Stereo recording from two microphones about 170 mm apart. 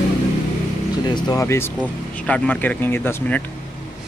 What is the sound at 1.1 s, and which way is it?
Speech, 25° left (ahead or behind).